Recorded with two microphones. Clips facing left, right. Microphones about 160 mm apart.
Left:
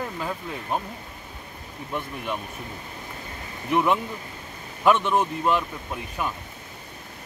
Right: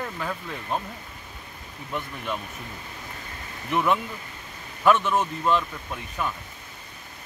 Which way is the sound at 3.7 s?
15° left (ahead or behind).